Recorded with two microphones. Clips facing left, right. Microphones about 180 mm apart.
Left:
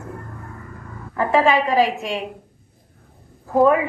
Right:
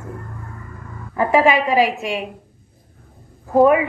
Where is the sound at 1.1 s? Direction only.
10° right (ahead or behind).